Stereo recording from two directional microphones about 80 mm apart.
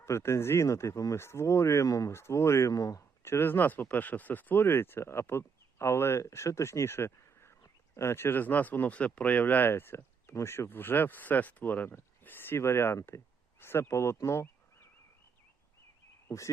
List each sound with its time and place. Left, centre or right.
0.0 s speech: left
3.2 s speech: left
13.1 s a sound: left
16.3 s frog: left